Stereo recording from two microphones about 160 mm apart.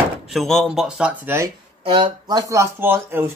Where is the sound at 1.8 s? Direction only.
30° right (ahead or behind); by 3.3 s 15° right (ahead or behind).